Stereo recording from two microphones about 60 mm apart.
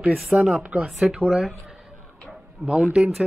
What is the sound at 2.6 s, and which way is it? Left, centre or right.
Speech, centre.